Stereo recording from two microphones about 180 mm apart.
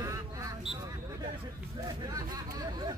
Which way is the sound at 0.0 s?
15° right (ahead or behind).